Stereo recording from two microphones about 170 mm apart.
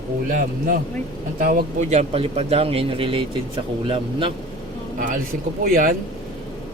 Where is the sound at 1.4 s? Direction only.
50° right (ahead or behind); by 4.3 s 30° right (ahead or behind).